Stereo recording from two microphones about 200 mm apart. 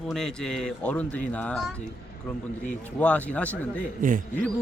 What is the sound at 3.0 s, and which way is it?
Speech, 5° left (ahead or behind).